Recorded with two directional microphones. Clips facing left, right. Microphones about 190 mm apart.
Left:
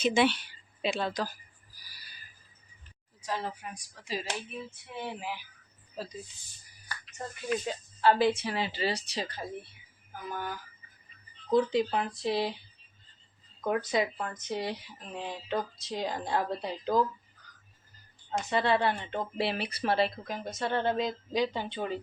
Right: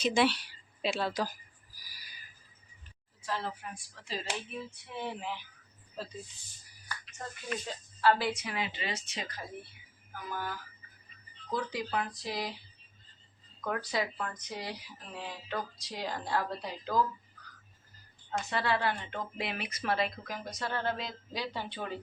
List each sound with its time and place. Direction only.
0.0 s a sound: centre (ahead or behind)
3.2 s speech: 15° left (ahead or behind)
4.5 s speech: centre (ahead or behind)
8.0 s a woman's voice: 20° left (ahead or behind)
10.1 s speech: 20° left (ahead or behind)
13.6 s speech: 20° left (ahead or behind)
18.3 s speech: 20° left (ahead or behind)